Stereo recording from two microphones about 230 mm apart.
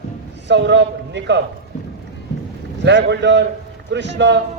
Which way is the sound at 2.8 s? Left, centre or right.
Right.